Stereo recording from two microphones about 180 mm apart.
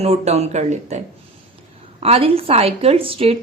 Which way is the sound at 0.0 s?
35° right (ahead or behind).